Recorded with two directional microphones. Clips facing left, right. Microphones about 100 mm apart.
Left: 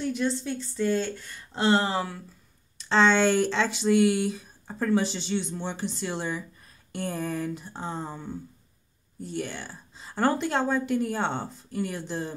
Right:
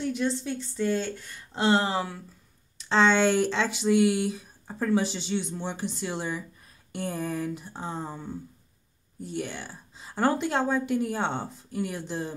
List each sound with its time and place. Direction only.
0.1 s speech: 20° right (ahead or behind)
9.2 s speech: 15° right (ahead or behind)